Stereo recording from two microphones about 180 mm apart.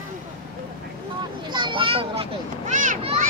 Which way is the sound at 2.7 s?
45° right (ahead or behind).